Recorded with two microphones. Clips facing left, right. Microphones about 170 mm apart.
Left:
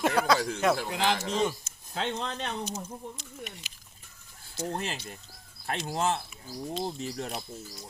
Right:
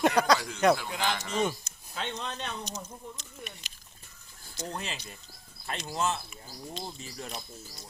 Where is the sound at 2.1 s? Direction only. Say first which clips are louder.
Left 3 dB; 70° left (ahead or behind).